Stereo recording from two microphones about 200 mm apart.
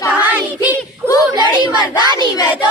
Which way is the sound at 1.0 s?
15° left (ahead or behind).